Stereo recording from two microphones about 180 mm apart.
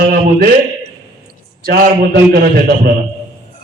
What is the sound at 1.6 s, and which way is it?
Speech, 50° right (ahead or behind).